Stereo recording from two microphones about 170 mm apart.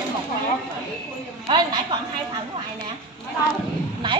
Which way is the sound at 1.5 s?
25° right (ahead or behind).